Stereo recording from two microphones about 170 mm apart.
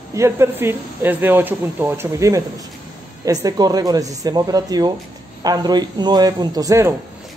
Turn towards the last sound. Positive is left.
turn(degrees=-20)  # may be behind; listen again after turning